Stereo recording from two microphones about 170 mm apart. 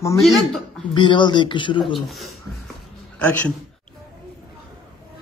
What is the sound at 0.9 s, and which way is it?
Speech, 30° left (ahead or behind).